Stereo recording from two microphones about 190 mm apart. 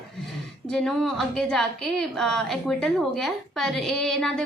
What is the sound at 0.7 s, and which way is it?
A woman's voice, centre (ahead or behind).